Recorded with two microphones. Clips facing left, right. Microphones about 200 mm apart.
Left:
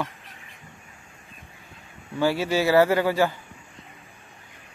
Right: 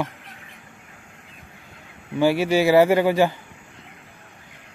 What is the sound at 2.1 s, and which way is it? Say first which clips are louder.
A man's voice: right 4 dB; 15° right (ahead or behind).